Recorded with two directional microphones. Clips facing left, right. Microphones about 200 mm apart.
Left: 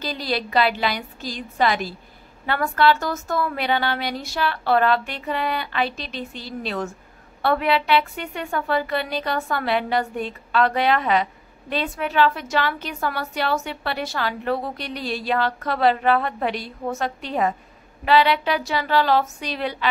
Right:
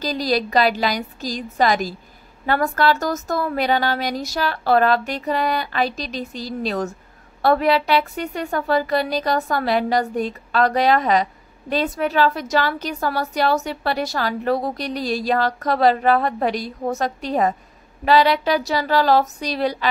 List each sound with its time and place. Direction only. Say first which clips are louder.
0.0 s a woman's voice: right 5 dB; 40° right (ahead or behind)